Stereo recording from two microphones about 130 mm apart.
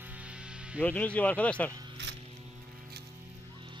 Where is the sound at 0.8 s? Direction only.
10° left (ahead or behind).